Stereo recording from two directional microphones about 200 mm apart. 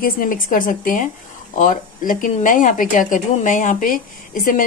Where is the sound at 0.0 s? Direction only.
45° left (ahead or behind).